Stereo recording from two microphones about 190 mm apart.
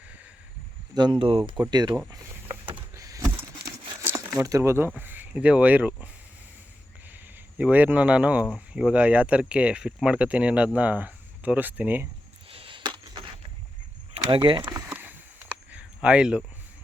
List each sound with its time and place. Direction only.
0.9 s speech: 25° right (ahead or behind)
2.6 s crumpling: 10° right (ahead or behind)
4.9 s speech: 10° right (ahead or behind)
7.6 s speech: 10° right (ahead or behind)
12.5 s a sound: 30° right (ahead or behind)
14.1 s speech: 30° right (ahead or behind)
14.7 s a sound: 15° right (ahead or behind)